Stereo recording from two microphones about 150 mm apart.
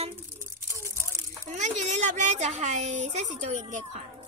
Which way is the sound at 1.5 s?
50° right (ahead or behind).